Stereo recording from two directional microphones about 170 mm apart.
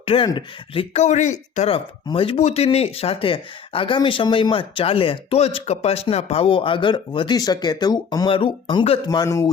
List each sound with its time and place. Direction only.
0.0 s speech: 35° left (ahead or behind)
9.0 s speech: 20° left (ahead or behind)